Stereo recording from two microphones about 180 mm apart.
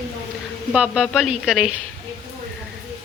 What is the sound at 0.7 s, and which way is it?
Speech, 5° right (ahead or behind).